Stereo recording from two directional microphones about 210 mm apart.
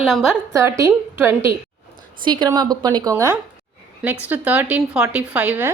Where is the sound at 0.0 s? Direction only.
5° right (ahead or behind).